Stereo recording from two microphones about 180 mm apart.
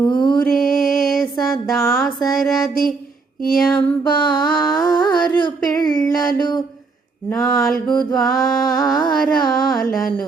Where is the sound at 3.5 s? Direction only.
Centre (ahead or behind).